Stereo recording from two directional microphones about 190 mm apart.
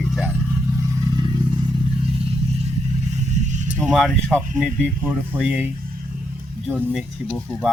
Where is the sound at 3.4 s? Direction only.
40° right (ahead or behind).